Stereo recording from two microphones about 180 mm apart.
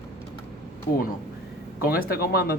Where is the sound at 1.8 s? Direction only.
55° left (ahead or behind).